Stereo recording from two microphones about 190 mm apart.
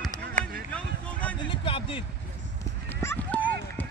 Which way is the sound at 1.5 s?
25° left (ahead or behind).